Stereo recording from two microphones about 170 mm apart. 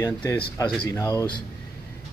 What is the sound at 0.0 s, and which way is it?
Speech, 15° left (ahead or behind).